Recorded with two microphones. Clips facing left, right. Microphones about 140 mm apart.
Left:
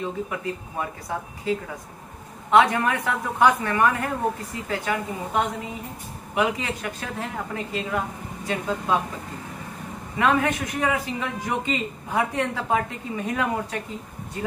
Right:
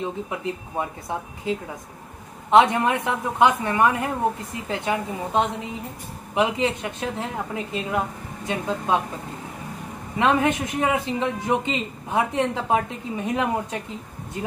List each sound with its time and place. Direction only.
0.0 s a man's voice: 20° right (ahead or behind)
2.5 s a man's voice: 25° right (ahead or behind)
10.1 s a man's voice: 25° right (ahead or behind)